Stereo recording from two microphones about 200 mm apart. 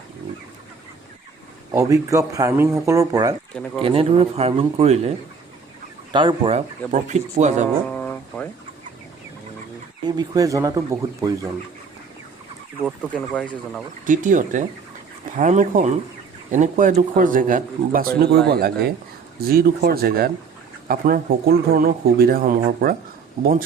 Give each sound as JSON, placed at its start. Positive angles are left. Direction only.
{"t": 1.7, "sound": "speech", "side_deg": -15}
{"t": 3.5, "sound": "speech", "side_deg": 5}
{"t": 3.8, "sound": "speech", "side_deg": -30}
{"t": 6.1, "sound": "speech", "side_deg": -25}
{"t": 7.9, "sound": "a sound", "side_deg": 10}
{"t": 10.2, "sound": "speech", "side_deg": -15}
{"t": 12.8, "sound": "speech", "side_deg": 5}
{"t": 14.0, "sound": "speech", "side_deg": -40}